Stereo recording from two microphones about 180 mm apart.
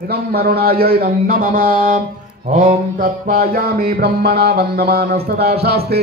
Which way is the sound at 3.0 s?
55° right (ahead or behind).